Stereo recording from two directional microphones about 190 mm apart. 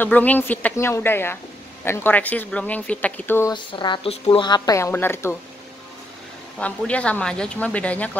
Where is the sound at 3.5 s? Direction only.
25° left (ahead or behind).